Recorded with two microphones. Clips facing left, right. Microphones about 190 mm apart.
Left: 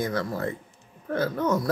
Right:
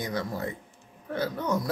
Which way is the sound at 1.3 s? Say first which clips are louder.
Left 4 dB; 15° right (ahead or behind).